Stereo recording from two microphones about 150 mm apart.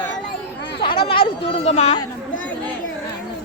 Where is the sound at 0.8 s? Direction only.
35° left (ahead or behind).